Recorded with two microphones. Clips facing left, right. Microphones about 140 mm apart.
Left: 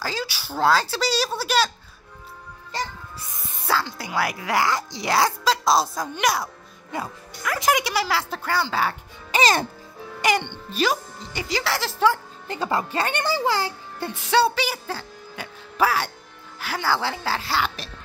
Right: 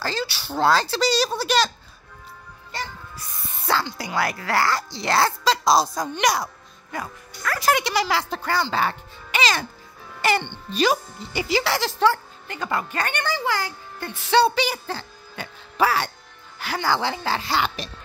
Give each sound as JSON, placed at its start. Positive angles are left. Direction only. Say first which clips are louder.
{"t": 0.0, "sound": "speech", "louder": "right 2 dB", "side_deg": 10}
{"t": 3.6, "sound": "speech", "louder": "right 1 dB", "side_deg": 5}
{"t": 6.9, "sound": "speech", "louder": "left 2 dB", "side_deg": 20}
{"t": 9.3, "sound": "music", "louder": "left 3 dB", "side_deg": 40}
{"t": 10.2, "sound": "speech", "louder": "even", "side_deg": 15}
{"t": 10.7, "sound": "speech", "louder": "right 2 dB", "side_deg": 0}
{"t": 12.4, "sound": "speech", "louder": "left 2 dB", "side_deg": 30}
{"t": 14.3, "sound": "speech", "louder": "right 2 dB", "side_deg": 5}